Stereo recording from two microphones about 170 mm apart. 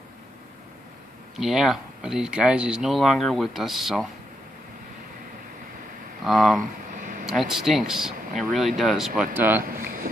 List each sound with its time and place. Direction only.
1.4 s speech: centre (ahead or behind)
6.2 s speech: centre (ahead or behind)
7.0 s a sound: 55° right (ahead or behind)
7.2 s speech: centre (ahead or behind)